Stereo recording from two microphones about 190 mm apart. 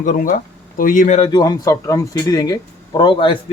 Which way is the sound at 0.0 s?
45° left (ahead or behind).